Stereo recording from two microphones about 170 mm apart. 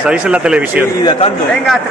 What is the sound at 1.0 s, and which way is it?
Speech, 25° left (ahead or behind).